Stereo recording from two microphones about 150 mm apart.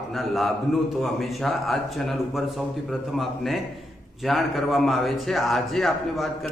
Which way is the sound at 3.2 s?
Centre (ahead or behind).